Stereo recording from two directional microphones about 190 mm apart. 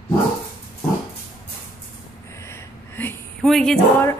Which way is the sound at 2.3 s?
15° left (ahead or behind).